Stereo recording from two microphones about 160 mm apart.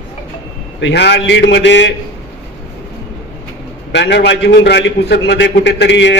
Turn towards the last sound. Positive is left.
turn(degrees=90)